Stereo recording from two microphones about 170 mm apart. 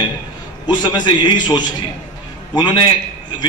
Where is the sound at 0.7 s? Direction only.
25° left (ahead or behind).